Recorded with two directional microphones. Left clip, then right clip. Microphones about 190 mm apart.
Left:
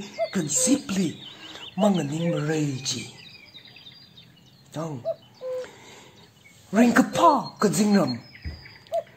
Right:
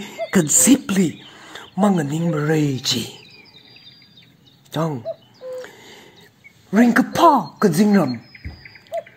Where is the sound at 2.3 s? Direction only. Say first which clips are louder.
Right 9 dB; 25° right (ahead or behind).